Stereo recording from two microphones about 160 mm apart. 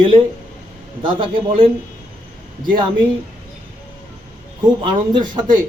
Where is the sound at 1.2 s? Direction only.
30° right (ahead or behind).